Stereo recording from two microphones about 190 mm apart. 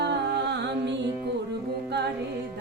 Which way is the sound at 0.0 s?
65° right (ahead or behind).